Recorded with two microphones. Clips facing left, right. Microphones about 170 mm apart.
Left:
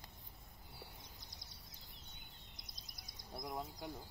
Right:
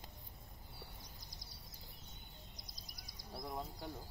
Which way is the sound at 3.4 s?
15° left (ahead or behind).